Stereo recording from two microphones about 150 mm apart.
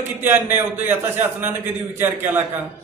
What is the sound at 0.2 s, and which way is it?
A man's voice, 15° right (ahead or behind).